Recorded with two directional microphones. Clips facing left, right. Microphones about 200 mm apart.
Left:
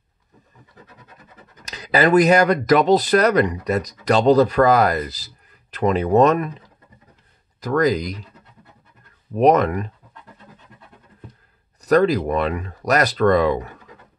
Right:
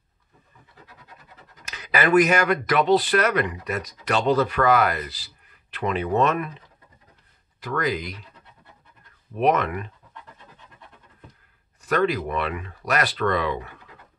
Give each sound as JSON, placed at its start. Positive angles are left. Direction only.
{"t": 1.6, "sound": "speech", "side_deg": 35}
{"t": 7.6, "sound": "speech", "side_deg": 40}
{"t": 9.3, "sound": "speech", "side_deg": 40}
{"t": 11.8, "sound": "speech", "side_deg": 40}